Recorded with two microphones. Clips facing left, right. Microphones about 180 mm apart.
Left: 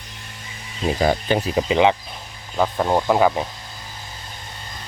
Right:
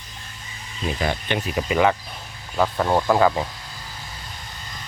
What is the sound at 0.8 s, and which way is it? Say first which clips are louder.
Speech: left 6 dB; 35° left (ahead or behind).